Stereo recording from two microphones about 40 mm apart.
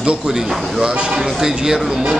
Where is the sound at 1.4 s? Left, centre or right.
Centre.